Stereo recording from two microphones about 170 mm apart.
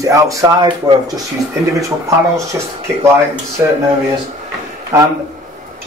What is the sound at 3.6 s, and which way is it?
Speech, 10° right (ahead or behind).